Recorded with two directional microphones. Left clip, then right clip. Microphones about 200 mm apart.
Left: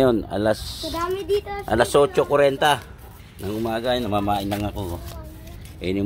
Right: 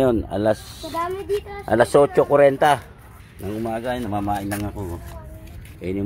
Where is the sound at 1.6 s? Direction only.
15° right (ahead or behind).